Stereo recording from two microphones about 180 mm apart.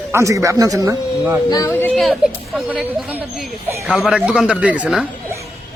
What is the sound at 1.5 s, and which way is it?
A woman's voice, 15° left (ahead or behind).